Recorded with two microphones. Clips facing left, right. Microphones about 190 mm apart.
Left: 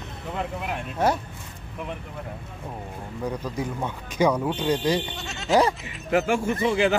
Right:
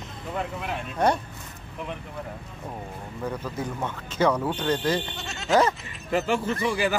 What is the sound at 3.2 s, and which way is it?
Speech, 15° left (ahead or behind).